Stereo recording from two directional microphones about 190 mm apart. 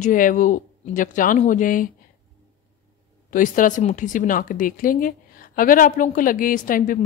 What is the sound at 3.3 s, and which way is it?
A woman's voice, 45° left (ahead or behind).